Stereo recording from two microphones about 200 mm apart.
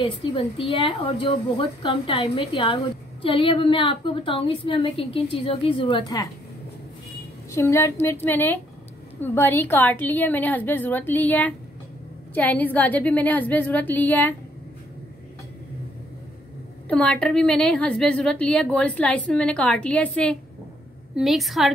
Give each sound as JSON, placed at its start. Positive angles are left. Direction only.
{"t": 0.0, "sound": "a woman's voice", "side_deg": 25}
{"t": 7.5, "sound": "a woman's voice", "side_deg": 15}
{"t": 16.8, "sound": "a woman's voice", "side_deg": 5}